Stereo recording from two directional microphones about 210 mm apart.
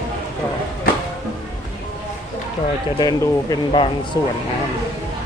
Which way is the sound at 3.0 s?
20° left (ahead or behind).